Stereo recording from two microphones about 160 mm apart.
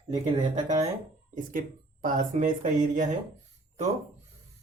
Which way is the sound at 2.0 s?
55° right (ahead or behind).